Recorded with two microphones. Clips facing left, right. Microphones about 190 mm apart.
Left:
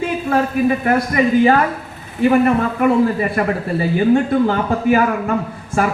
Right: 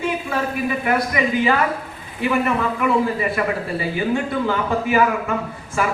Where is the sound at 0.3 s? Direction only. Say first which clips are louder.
Left 7 dB; 45° left (ahead or behind).